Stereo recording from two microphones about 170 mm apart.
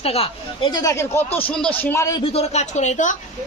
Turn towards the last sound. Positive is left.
turn(degrees=45)  # may be behind; listen again after turning